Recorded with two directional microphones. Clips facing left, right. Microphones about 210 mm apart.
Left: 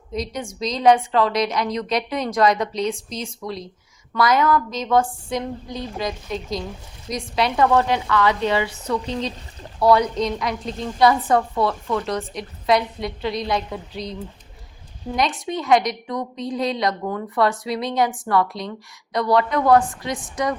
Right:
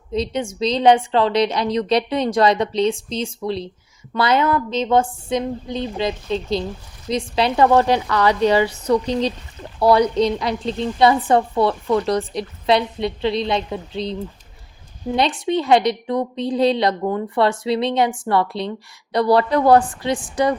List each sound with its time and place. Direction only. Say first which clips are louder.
0.1 s a woman's voice: right 5 dB; 25° right (ahead or behind)